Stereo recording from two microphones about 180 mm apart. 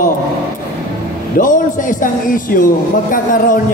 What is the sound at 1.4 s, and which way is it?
A man's voice, 45° left (ahead or behind).